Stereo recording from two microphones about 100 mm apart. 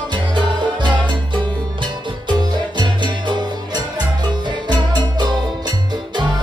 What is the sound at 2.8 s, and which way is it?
Music, 50° right (ahead or behind).